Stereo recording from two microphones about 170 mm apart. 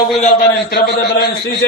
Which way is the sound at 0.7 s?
75° left (ahead or behind).